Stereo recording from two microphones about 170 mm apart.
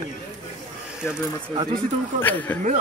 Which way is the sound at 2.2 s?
10° left (ahead or behind).